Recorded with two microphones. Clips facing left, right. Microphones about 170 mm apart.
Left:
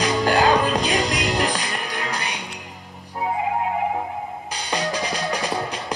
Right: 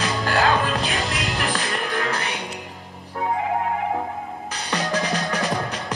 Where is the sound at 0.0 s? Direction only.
15° left (ahead or behind).